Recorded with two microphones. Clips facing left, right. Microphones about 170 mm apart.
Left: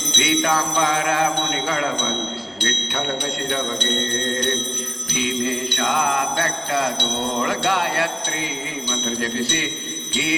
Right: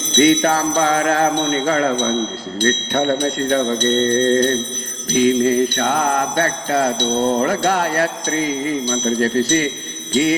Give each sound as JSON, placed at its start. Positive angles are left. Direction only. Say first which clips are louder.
{"t": 0.1, "sound": "jingle bell", "louder": "right 7 dB", "side_deg": -40}